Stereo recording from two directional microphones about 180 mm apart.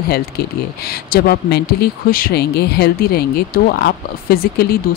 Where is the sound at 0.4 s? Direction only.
60° left (ahead or behind).